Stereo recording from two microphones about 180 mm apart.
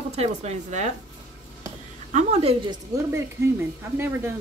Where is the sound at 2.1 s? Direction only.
40° right (ahead or behind).